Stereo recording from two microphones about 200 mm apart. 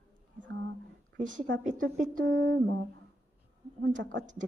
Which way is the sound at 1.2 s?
40° right (ahead or behind).